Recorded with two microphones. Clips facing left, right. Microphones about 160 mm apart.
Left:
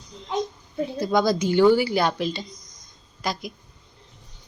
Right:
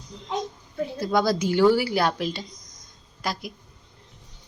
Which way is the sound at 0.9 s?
5° right (ahead or behind).